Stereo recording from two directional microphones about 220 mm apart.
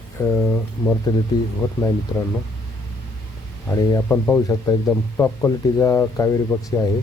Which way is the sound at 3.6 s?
15° left (ahead or behind).